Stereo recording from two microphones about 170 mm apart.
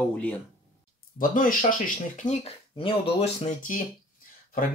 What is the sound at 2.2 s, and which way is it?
Speech, 40° left (ahead or behind).